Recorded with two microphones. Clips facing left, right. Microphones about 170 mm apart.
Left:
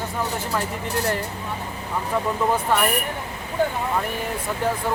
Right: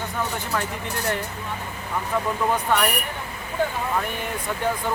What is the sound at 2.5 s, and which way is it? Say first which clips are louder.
Speech: even; 5° left (ahead or behind).